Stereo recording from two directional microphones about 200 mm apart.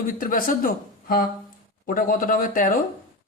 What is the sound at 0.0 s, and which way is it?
A man's voice, 45° left (ahead or behind).